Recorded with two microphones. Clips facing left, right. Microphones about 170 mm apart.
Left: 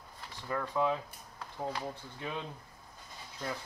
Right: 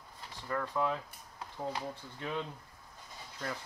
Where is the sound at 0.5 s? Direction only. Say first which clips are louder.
Left 2 dB; 5° left (ahead or behind).